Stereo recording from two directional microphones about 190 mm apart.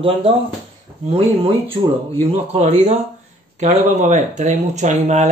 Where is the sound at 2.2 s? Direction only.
35° right (ahead or behind).